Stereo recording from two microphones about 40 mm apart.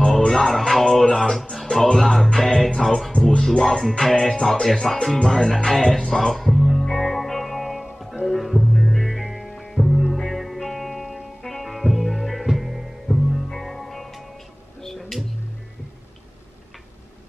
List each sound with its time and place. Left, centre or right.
0.3 s music: centre
1.0 s speech: centre
2.0 s music: centre
5.0 s music: centre